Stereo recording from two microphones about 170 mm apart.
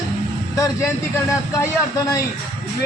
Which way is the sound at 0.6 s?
20° left (ahead or behind).